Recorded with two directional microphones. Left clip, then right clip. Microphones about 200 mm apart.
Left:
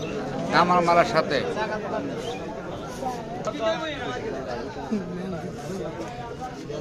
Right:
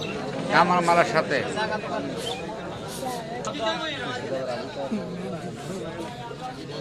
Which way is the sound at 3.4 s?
35° left (ahead or behind).